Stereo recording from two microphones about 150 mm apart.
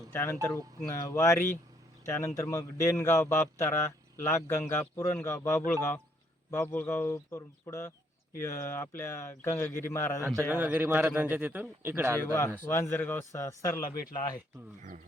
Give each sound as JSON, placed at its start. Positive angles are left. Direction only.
{"t": 0.1, "sound": "a man's voice", "side_deg": 15}
{"t": 10.6, "sound": "a man's voice", "side_deg": -10}
{"t": 12.7, "sound": "a man's voice", "side_deg": 15}